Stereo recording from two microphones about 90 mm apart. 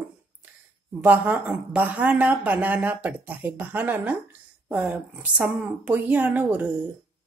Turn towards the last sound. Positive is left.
turn(degrees=-20)  # may be behind; listen again after turning